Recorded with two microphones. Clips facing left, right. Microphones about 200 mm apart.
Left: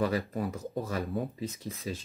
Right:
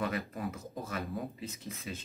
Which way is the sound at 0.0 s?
35° left (ahead or behind).